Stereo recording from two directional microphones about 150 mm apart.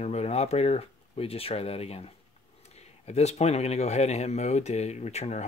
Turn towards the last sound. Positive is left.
turn(degrees=45)  # may be behind; listen again after turning